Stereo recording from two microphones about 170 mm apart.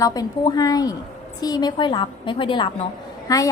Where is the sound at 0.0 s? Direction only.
20° left (ahead or behind).